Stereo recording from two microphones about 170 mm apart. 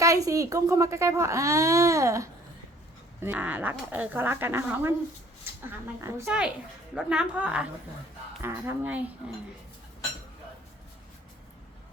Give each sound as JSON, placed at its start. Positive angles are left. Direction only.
{"t": 0.0, "sound": "speech", "side_deg": -20}
{"t": 6.0, "sound": "speech", "side_deg": -15}